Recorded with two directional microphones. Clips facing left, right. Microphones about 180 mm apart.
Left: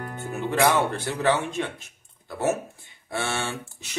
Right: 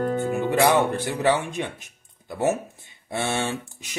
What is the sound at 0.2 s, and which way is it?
Speech, 15° right (ahead or behind).